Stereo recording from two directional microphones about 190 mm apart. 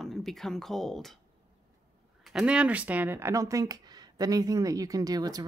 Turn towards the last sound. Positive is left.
turn(degrees=-20)  # may be behind; listen again after turning